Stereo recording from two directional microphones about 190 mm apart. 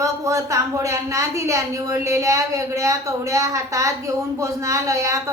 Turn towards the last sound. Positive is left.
turn(degrees=-15)  # may be behind; listen again after turning